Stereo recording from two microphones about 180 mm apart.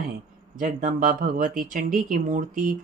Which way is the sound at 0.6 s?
45° right (ahead or behind).